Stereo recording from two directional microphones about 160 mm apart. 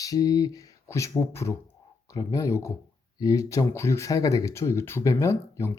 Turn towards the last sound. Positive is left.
turn(degrees=20)  # may be behind; listen again after turning